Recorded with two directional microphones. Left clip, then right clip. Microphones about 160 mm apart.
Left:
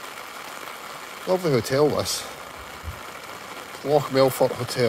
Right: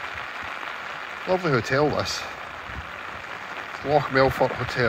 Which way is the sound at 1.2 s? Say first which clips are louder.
Left 1 dB; 25° left (ahead or behind).